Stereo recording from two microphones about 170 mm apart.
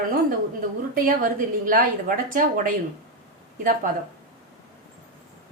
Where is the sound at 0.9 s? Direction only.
55° right (ahead or behind).